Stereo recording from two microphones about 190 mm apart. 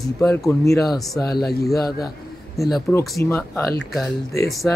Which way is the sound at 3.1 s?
15° left (ahead or behind).